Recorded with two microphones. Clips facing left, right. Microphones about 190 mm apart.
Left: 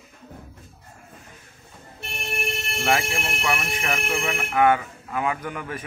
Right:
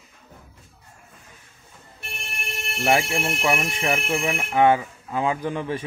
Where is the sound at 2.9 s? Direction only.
25° right (ahead or behind).